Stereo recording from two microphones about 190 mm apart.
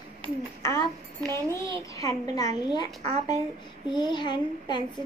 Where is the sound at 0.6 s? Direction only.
15° left (ahead or behind).